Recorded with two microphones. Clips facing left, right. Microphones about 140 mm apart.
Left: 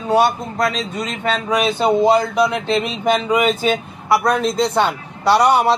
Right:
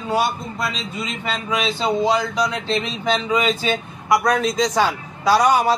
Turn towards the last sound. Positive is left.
turn(degrees=70)  # may be behind; listen again after turning